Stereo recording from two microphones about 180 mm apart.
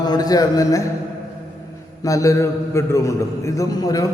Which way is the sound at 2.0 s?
20° left (ahead or behind).